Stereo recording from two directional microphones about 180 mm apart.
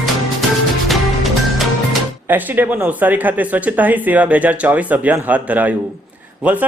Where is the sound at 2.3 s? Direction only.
10° right (ahead or behind).